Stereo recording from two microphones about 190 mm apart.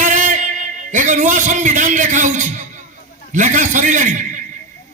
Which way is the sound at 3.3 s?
40° right (ahead or behind).